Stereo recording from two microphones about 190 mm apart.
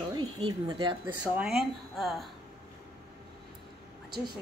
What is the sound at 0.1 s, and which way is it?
Speech, 25° right (ahead or behind).